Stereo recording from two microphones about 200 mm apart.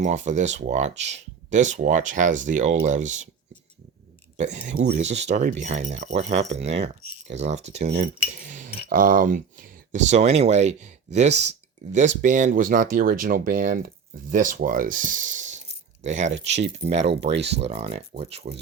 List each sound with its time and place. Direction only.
0.0 s speech: 35° right (ahead or behind)
4.4 s speech: 40° right (ahead or behind)